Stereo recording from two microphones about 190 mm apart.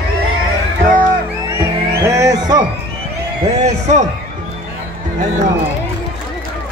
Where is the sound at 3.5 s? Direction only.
35° right (ahead or behind).